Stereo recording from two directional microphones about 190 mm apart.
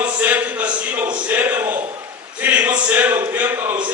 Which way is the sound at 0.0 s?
10° right (ahead or behind).